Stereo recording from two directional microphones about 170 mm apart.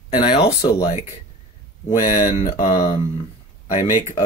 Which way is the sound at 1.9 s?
25° left (ahead or behind).